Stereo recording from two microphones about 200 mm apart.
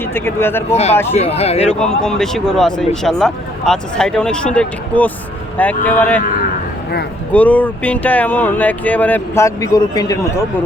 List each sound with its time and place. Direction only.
0.1 s speech: 10° left (ahead or behind)
0.7 s speech: 30° left (ahead or behind)
2.0 s speech: 5° left (ahead or behind)
7.3 s speech: 5° left (ahead or behind)